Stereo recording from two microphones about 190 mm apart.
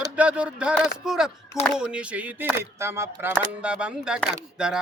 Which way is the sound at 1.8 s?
5° right (ahead or behind).